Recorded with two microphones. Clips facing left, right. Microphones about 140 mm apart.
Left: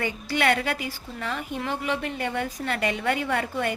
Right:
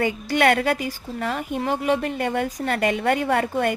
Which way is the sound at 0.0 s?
45° right (ahead or behind).